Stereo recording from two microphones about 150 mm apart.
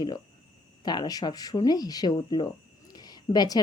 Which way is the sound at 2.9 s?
25° left (ahead or behind).